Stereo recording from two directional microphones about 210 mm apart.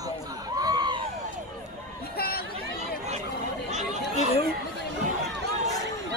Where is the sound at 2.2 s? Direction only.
45° left (ahead or behind).